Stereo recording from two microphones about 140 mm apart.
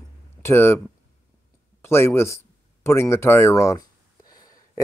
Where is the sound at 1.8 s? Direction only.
20° left (ahead or behind).